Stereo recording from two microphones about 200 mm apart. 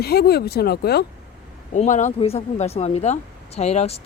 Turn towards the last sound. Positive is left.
turn(degrees=35)  # may be behind; listen again after turning